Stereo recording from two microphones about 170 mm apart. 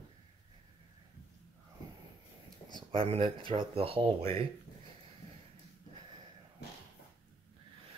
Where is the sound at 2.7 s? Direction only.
30° right (ahead or behind).